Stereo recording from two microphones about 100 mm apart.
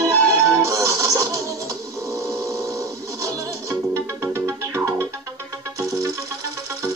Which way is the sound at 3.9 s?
30° right (ahead or behind).